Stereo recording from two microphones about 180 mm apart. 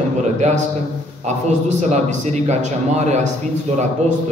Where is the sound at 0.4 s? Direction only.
40° right (ahead or behind).